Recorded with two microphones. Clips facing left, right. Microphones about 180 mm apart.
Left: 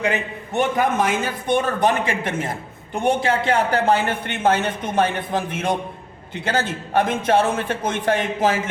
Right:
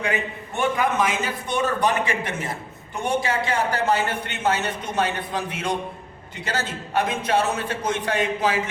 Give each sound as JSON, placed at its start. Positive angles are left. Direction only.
{"t": 0.8, "sound": "a man's voice", "side_deg": 50}